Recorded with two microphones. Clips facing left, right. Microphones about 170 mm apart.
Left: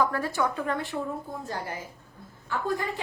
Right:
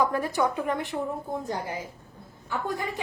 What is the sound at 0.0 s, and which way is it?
A woman's voice, 15° right (ahead or behind).